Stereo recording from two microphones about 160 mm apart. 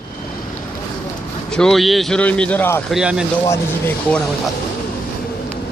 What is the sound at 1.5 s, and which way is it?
A man's voice, centre (ahead or behind).